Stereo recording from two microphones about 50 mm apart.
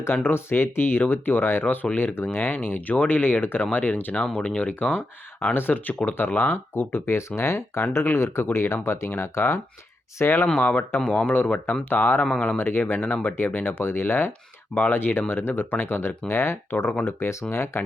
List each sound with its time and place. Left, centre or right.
0.1 s speech: left
3.6 s speech: left
4.1 s speech: centre
4.4 s speech: left
5.5 s speech: left
7.2 s speech: left
10.6 s speech: left